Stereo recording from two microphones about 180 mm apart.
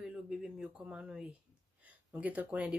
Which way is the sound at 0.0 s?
5° right (ahead or behind).